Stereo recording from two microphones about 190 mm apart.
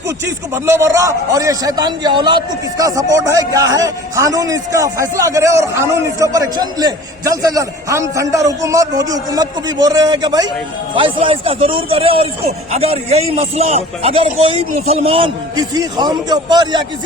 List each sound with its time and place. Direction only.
0.3 s a man's voice: 15° right (ahead or behind)